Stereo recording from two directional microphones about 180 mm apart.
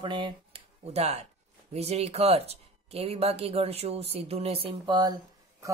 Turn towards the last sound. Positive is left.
turn(degrees=-25)  # may be behind; listen again after turning